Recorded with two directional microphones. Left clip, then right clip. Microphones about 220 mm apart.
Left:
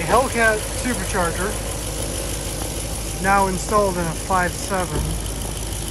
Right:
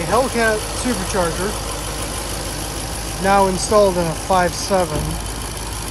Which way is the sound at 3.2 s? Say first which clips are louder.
Right 3 dB; 15° right (ahead or behind).